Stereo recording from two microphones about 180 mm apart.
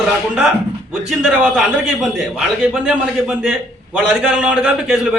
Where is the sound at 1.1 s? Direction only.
5° right (ahead or behind).